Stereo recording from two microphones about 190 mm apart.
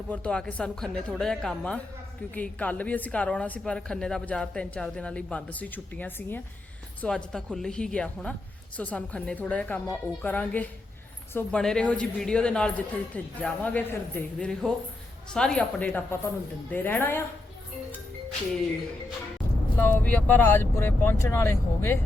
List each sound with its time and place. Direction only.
0.1 s a man's voice: 5° left (ahead or behind)
19.7 s a woman's voice: 10° left (ahead or behind)